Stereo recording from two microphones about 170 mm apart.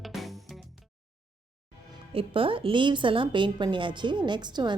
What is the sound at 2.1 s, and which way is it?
A woman's voice, 30° right (ahead or behind).